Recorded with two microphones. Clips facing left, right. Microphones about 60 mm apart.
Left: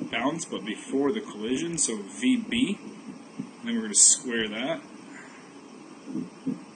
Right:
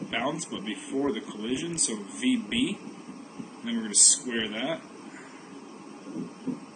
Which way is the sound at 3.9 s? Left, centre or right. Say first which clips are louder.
Left 1 dB; centre.